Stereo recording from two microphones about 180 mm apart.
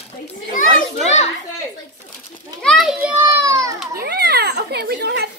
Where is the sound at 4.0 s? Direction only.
65° right (ahead or behind).